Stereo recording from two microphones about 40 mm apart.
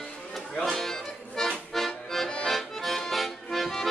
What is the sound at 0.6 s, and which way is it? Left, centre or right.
Music, centre.